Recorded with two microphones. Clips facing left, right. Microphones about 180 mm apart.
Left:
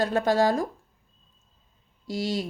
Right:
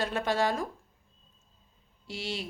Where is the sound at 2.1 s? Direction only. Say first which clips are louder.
Left 8 dB; 40° left (ahead or behind).